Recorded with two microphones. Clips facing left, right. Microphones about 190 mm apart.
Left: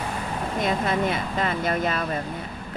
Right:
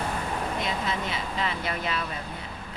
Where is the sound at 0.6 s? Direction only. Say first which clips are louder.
Left 7 dB; 55° left (ahead or behind).